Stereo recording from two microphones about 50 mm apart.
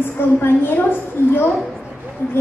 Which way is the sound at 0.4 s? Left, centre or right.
Left.